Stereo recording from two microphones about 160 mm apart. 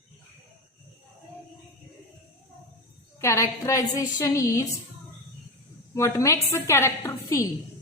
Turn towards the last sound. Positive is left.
turn(degrees=20)  # may be behind; listen again after turning